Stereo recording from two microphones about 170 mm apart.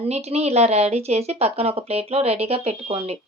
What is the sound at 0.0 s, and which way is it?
Speech, 40° right (ahead or behind).